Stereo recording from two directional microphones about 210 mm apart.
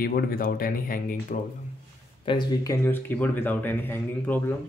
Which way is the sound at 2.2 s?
20° left (ahead or behind).